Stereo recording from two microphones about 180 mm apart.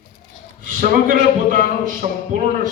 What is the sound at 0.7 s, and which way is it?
A man's voice, 50° right (ahead or behind).